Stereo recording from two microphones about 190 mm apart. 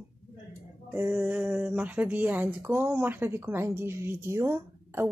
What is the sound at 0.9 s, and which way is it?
Speech, 10° right (ahead or behind).